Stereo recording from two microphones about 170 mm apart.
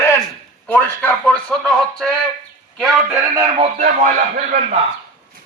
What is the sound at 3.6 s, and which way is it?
Speech, 50° right (ahead or behind).